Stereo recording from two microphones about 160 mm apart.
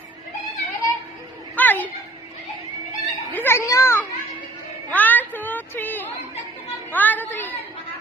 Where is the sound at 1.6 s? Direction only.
10° left (ahead or behind).